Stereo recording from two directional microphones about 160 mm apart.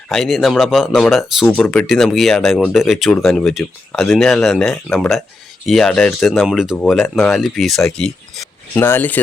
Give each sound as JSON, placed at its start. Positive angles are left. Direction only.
{"t": 0.1, "sound": "speech", "side_deg": 0}
{"t": 8.7, "sound": "speech", "side_deg": 15}